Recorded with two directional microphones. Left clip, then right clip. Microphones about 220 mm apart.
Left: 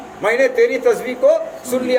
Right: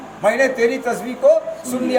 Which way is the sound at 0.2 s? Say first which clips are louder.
Left 2 dB; 10° left (ahead or behind).